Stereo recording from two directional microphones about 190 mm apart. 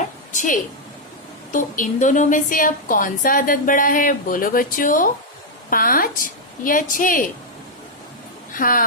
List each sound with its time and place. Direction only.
0.3 s a woman's voice: 45° left (ahead or behind)
8.5 s a woman's voice: 45° left (ahead or behind)